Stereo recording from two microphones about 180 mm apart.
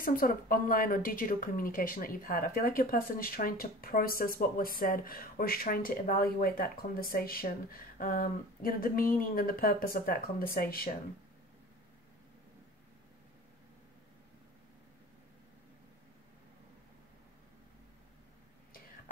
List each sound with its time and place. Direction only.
0.0 s speech: 55° left (ahead or behind)